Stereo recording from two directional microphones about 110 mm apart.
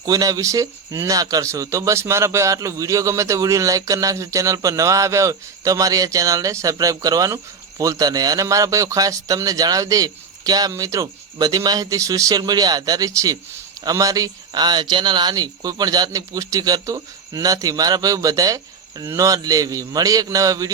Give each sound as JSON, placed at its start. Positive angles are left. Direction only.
{"t": 0.0, "sound": "speech", "side_deg": -35}